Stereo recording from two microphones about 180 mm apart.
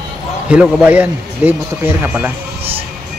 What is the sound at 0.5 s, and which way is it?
Speech, 5° right (ahead or behind).